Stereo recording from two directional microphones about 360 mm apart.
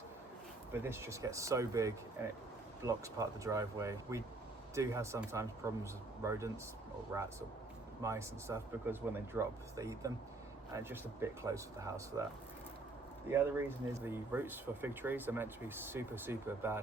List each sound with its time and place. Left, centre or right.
0.7 s speech: centre
13.2 s speech: centre